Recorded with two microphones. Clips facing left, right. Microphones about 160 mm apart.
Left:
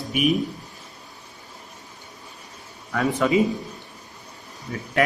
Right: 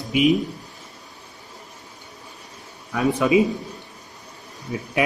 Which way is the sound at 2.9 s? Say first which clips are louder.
Right 2 dB; 15° right (ahead or behind).